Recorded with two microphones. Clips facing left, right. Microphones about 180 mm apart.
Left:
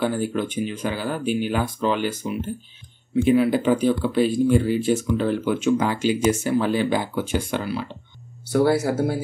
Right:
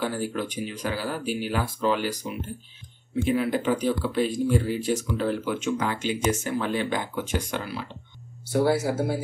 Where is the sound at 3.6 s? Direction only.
25° left (ahead or behind).